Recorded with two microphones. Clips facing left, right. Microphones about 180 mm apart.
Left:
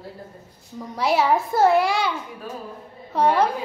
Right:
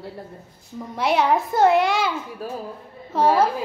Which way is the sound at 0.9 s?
Centre (ahead or behind).